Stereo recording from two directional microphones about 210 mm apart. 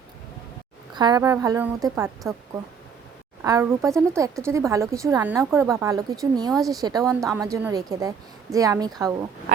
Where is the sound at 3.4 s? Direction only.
15° right (ahead or behind).